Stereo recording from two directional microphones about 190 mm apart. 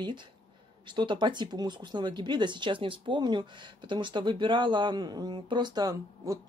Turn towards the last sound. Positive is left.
turn(degrees=-20)  # may be behind; listen again after turning